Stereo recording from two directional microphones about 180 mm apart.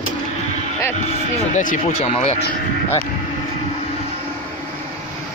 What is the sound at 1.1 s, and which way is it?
Speech, 45° left (ahead or behind).